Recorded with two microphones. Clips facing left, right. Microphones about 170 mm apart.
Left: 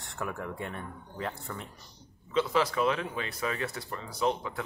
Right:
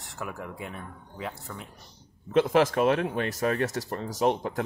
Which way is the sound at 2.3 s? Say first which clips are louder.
Right 6 dB; 50° right (ahead or behind).